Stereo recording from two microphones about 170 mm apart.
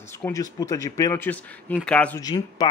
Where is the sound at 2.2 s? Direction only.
25° left (ahead or behind).